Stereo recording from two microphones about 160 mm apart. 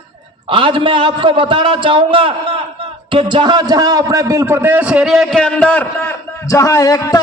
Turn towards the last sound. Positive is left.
turn(degrees=20)  # may be behind; listen again after turning